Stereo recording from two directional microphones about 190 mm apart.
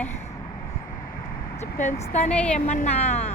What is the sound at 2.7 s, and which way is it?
Speech, 35° left (ahead or behind).